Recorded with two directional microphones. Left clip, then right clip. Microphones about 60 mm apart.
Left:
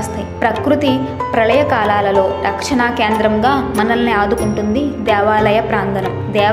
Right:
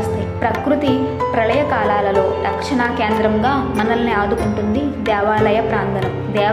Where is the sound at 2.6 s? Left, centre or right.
Left.